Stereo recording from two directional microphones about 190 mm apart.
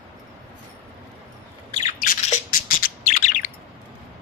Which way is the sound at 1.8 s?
40° left (ahead or behind).